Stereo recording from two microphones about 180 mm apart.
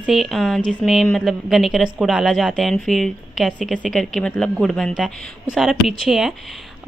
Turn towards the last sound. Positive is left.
turn(degrees=0)  # may be behind; listen again after turning